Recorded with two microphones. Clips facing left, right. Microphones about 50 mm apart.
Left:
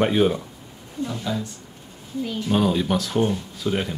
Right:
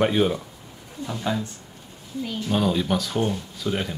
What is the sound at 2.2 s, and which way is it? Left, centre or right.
Speech, centre.